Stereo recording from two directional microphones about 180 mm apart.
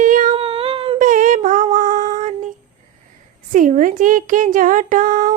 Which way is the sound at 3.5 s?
45° right (ahead or behind).